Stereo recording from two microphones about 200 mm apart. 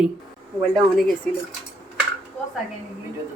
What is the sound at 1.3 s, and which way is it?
Speech, 5° left (ahead or behind).